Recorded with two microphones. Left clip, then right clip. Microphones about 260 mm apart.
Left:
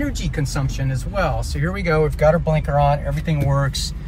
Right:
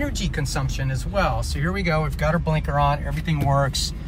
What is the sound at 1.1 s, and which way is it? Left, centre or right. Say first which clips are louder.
Speech: left 1 dB; centre.